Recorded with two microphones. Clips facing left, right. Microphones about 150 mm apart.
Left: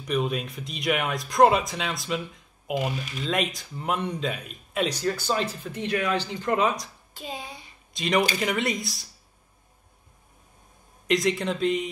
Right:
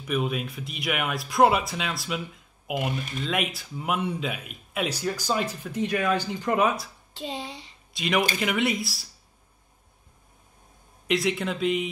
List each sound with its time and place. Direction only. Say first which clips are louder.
0.0 s speech: left 1 dB; 5° right (ahead or behind)
7.2 s a child's voice: right 3 dB; 25° right (ahead or behind)
7.9 s speech: left 1 dB; 5° right (ahead or behind)
11.1 s speech: left 2 dB; 5° right (ahead or behind)